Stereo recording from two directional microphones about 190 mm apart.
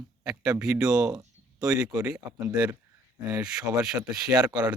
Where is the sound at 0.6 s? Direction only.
5° right (ahead or behind).